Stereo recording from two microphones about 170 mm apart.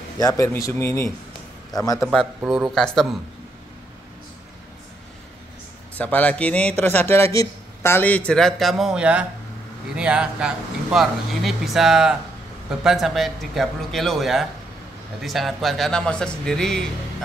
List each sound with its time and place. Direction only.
0.2 s a man's voice: 20° left (ahead or behind)
2.0 s speech: 5° right (ahead or behind)
5.9 s speech: 10° left (ahead or behind)